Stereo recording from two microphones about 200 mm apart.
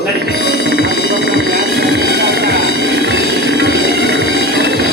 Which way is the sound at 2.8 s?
60° right (ahead or behind).